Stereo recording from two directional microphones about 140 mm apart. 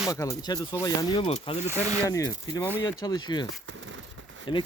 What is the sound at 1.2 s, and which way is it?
Speech, 45° left (ahead or behind).